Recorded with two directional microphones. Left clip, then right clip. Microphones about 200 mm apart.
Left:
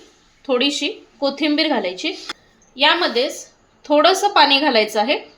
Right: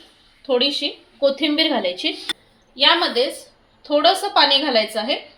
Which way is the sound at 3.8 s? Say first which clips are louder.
Left 2 dB; 45° left (ahead or behind).